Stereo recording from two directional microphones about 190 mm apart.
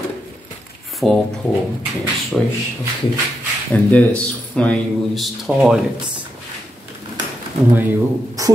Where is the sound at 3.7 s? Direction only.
5° left (ahead or behind).